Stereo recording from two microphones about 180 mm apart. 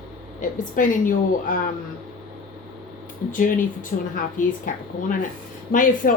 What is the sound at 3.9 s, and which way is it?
Speech, 45° left (ahead or behind).